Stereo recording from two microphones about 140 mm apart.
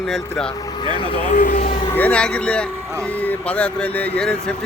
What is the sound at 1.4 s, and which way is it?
Speech, 90° left.